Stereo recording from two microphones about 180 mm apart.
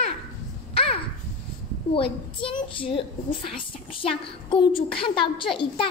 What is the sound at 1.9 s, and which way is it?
A woman's voice, 30° left (ahead or behind).